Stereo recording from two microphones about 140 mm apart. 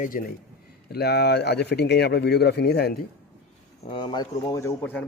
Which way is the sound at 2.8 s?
90° left.